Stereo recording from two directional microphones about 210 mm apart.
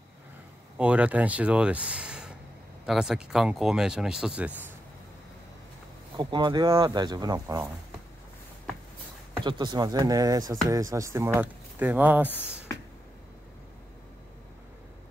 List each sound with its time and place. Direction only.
0.7 s speech: 5° right (ahead or behind)
6.1 s speech: 20° right (ahead or behind)
9.4 s speech: 20° right (ahead or behind)